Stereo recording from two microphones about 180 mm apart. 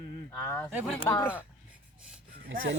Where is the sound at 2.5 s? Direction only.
90° right.